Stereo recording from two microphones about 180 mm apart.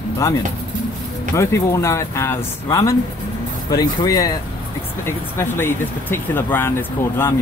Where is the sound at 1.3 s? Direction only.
15° left (ahead or behind).